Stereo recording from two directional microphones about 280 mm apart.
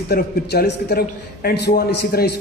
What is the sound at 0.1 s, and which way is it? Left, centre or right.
A man's voice, left.